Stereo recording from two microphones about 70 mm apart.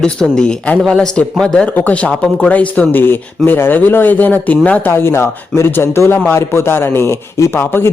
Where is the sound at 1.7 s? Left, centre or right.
Left.